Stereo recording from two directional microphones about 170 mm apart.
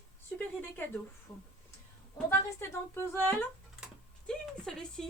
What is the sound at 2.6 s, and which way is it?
Speech, 15° left (ahead or behind).